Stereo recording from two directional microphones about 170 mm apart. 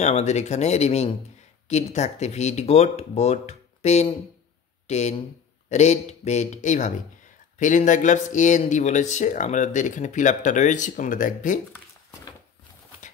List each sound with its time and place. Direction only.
0.0 s speech: 40° left (ahead or behind)
13.0 s clip-clop: 45° left (ahead or behind)